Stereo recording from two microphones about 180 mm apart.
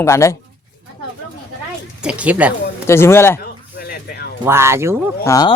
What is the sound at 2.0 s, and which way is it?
Speech, 5° right (ahead or behind).